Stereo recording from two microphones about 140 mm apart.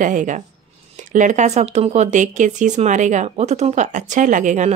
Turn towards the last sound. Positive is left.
turn(degrees=-60)  # may be behind; listen again after turning